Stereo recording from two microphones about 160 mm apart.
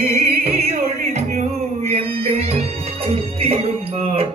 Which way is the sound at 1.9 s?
40° right (ahead or behind).